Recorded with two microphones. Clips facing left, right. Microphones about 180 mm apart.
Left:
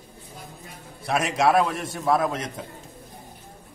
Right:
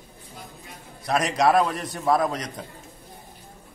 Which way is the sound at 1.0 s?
5° left (ahead or behind).